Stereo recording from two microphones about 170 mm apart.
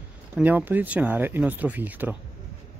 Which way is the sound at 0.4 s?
10° right (ahead or behind).